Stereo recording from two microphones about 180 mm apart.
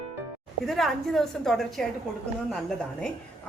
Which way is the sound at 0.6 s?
Centre (ahead or behind).